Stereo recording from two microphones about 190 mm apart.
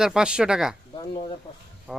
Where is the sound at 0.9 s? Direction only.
25° left (ahead or behind).